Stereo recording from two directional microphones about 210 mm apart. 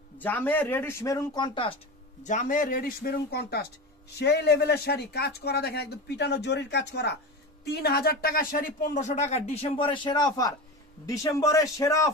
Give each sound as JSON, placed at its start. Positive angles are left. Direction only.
{"t": 0.2, "sound": "speech", "side_deg": 10}
{"t": 2.2, "sound": "speech", "side_deg": 40}